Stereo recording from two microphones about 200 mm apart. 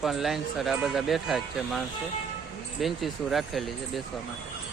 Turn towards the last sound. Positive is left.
turn(degrees=0)  # may be behind; listen again after turning